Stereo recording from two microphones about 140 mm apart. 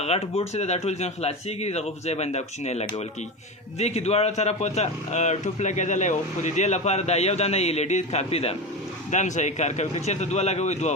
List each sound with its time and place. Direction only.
0.0 s a man's voice: 45° left (ahead or behind)
9.0 s a man's voice: 60° left (ahead or behind)